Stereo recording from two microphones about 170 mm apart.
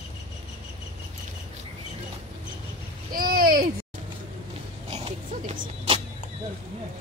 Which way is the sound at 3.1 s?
60° right (ahead or behind).